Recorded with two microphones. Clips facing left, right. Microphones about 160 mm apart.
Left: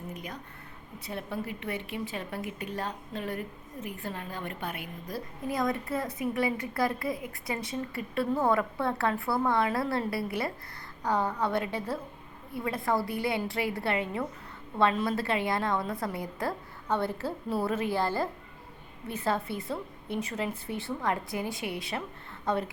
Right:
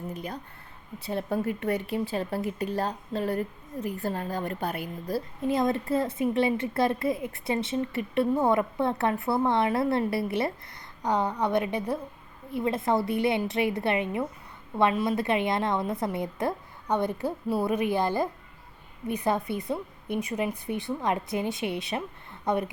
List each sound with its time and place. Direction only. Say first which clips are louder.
0.1 s a woman's voice: right 4 dB; 30° right (ahead or behind)
1.3 s a woman's voice: right 8 dB; 45° right (ahead or behind); by 22.6 s 20° right (ahead or behind)